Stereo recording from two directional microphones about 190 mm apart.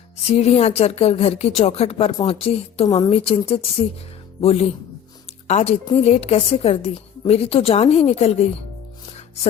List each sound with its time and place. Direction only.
0.3 s a woman's voice: 35° left (ahead or behind)